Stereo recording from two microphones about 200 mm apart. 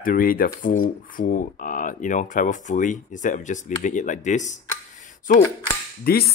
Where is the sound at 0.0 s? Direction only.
45° left (ahead or behind).